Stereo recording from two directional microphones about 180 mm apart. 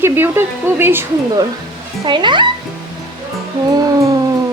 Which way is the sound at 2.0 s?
25° right (ahead or behind).